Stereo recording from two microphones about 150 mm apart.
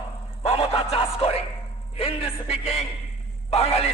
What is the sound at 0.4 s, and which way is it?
Music, 40° left (ahead or behind).